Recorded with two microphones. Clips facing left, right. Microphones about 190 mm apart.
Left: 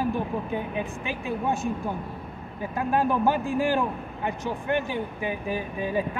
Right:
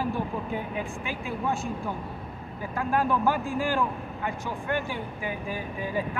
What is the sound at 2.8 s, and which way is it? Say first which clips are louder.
A man's voice: left 2 dB; 20° left (ahead or behind).